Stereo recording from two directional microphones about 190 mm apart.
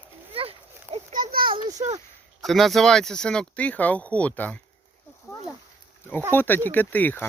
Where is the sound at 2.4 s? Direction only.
Centre (ahead or behind).